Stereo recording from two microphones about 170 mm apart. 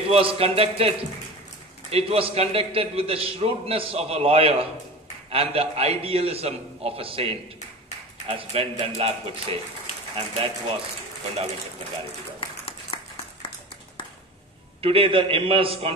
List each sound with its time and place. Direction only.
0.1 s a man's voice: 35° right (ahead or behind)
12.4 s a sound: 35° left (ahead or behind)
14.8 s a man's voice: 35° right (ahead or behind)